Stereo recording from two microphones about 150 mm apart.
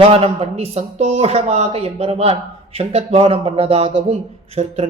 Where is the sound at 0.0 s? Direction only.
40° right (ahead or behind).